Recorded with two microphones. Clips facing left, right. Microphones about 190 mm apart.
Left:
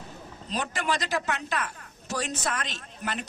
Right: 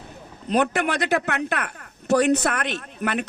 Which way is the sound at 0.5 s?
60° right (ahead or behind).